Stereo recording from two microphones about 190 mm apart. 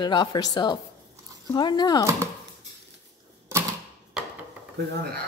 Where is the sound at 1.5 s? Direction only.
20° left (ahead or behind).